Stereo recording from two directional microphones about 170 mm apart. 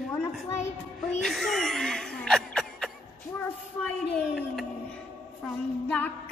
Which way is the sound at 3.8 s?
5° left (ahead or behind).